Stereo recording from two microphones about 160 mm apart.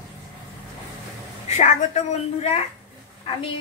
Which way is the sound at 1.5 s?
45° left (ahead or behind).